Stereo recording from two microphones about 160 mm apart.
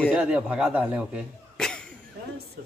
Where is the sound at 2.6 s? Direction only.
70° right (ahead or behind).